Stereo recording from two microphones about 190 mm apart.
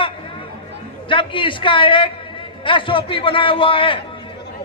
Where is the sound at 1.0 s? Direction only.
25° left (ahead or behind).